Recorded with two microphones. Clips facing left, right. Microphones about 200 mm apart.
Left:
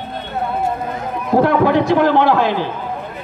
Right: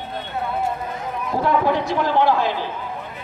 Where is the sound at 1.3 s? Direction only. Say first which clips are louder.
Left 7 dB; 70° left (ahead or behind).